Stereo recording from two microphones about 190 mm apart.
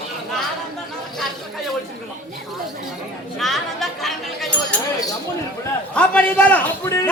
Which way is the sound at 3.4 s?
Centre (ahead or behind).